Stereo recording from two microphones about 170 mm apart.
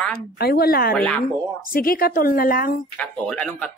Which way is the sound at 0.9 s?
5° left (ahead or behind).